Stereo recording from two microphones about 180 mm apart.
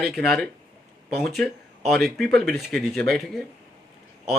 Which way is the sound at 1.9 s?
Centre (ahead or behind).